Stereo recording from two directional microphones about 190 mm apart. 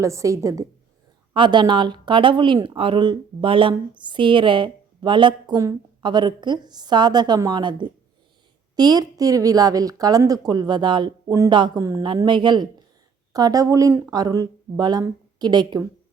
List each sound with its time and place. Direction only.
0.0 s a woman's voice: 15° right (ahead or behind)